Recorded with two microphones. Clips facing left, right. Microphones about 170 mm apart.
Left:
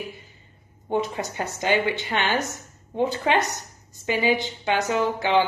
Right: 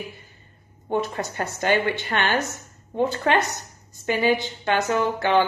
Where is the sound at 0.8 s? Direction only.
15° left (ahead or behind).